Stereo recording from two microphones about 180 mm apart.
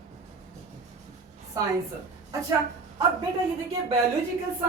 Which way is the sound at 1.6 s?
20° right (ahead or behind).